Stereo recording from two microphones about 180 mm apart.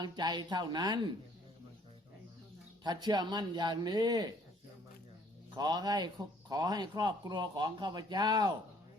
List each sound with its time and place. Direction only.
0.0 s speech: 25° right (ahead or behind)
2.8 s speech: 25° right (ahead or behind)
5.5 s speech: 20° right (ahead or behind)